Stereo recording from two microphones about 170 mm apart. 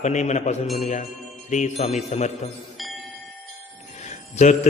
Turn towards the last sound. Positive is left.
turn(degrees=45)  # may be behind; listen again after turning